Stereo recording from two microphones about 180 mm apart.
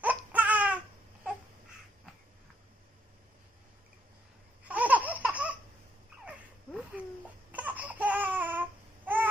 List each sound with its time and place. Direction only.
0.0 s baby cry: 10° right (ahead or behind)
4.6 s laughter: 10° right (ahead or behind)
6.2 s a sound: 5° right (ahead or behind)
7.5 s babbling: 10° right (ahead or behind)